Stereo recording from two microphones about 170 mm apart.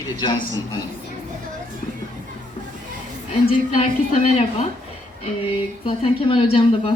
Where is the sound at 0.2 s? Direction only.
25° left (ahead or behind).